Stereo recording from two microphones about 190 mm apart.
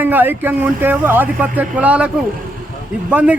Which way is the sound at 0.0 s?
10° right (ahead or behind).